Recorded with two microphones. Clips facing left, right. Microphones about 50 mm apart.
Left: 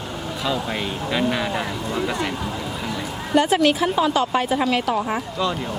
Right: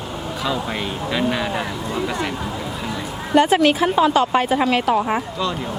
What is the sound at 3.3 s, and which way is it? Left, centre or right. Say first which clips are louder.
A woman's voice: right 3 dB; right.